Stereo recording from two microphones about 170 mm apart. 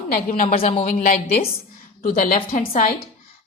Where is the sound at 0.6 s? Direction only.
45° left (ahead or behind).